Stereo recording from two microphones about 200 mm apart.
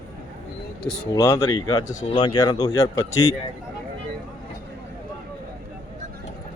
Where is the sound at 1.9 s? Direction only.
40° left (ahead or behind).